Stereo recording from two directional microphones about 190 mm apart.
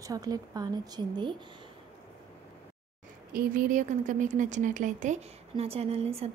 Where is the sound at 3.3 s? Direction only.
45° right (ahead or behind).